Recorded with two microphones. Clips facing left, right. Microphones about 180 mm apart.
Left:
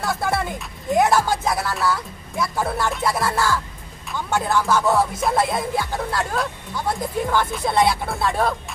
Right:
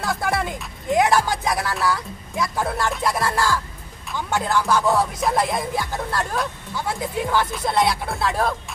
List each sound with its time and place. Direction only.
0.0 s music: centre (ahead or behind)
0.9 s speech: centre (ahead or behind)
4.1 s music: centre (ahead or behind)